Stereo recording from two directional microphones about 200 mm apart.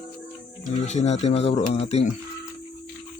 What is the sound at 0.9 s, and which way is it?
Speech, 35° left (ahead or behind).